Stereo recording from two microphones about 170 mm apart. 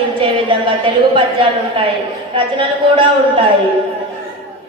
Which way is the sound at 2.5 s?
30° right (ahead or behind).